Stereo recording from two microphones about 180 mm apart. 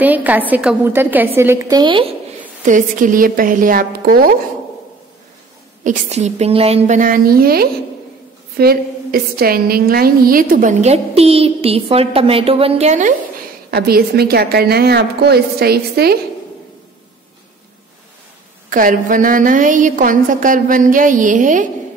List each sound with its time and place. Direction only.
0.0 s a woman's voice: 10° right (ahead or behind); by 2.0 s 25° right (ahead or behind)
2.6 s a woman's voice: 45° right (ahead or behind)
5.9 s a woman's voice: 40° right (ahead or behind)
13.7 s a woman's voice: 60° right (ahead or behind)
18.7 s a woman's voice: 50° right (ahead or behind)